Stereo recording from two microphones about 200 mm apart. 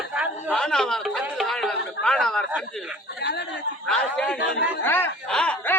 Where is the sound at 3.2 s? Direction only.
55° left (ahead or behind).